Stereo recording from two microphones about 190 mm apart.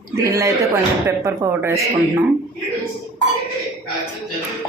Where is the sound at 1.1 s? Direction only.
15° right (ahead or behind).